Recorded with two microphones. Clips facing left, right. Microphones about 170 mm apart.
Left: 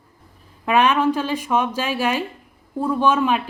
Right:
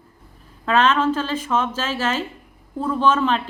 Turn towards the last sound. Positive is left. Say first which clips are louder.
# left 1 dB
turn(degrees=10)  # may be behind; listen again after turning